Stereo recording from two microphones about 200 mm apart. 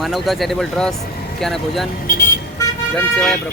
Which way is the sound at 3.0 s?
5° left (ahead or behind).